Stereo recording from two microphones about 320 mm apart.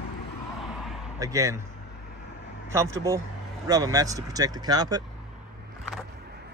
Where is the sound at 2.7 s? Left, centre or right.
Centre.